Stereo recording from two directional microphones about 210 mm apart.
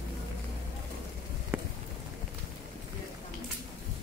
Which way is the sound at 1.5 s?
5° right (ahead or behind).